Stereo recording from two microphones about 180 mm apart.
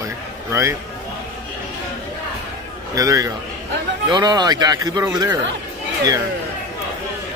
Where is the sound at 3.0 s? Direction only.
20° right (ahead or behind).